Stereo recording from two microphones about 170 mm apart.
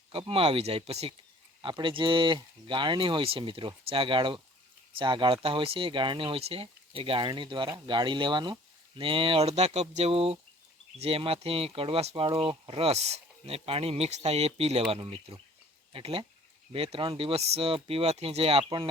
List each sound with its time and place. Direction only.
0.1 s speech: 30° right (ahead or behind)